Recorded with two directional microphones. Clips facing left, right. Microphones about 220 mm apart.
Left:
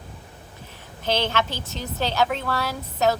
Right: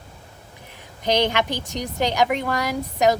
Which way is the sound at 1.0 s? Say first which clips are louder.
Right 3 dB; 15° right (ahead or behind).